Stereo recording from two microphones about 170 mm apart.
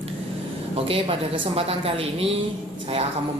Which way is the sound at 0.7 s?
35° right (ahead or behind).